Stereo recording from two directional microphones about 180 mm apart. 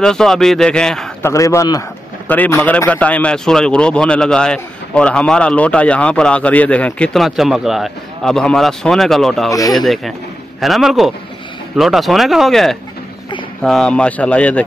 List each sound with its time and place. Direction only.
0.0 s a man's voice: 5° left (ahead or behind)
1.2 s a man's voice: 15° left (ahead or behind)
9.5 s speech: 20° left (ahead or behind)
9.8 s a man's voice: centre (ahead or behind)